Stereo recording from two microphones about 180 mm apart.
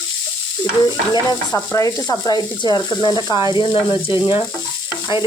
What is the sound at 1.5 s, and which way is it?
Speech, 15° left (ahead or behind).